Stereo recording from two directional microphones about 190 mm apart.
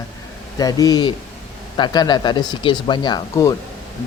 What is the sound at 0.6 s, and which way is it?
Speech, 20° left (ahead or behind).